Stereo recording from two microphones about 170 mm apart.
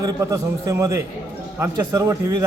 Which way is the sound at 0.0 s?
20° right (ahead or behind).